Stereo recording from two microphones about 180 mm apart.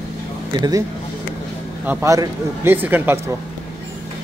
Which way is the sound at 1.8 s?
20° right (ahead or behind).